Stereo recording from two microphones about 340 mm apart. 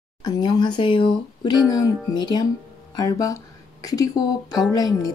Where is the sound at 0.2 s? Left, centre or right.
Centre.